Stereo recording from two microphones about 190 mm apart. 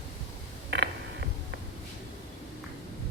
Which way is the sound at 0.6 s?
65° right (ahead or behind).